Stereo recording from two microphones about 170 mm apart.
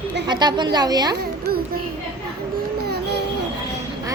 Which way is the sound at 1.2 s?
65° right (ahead or behind).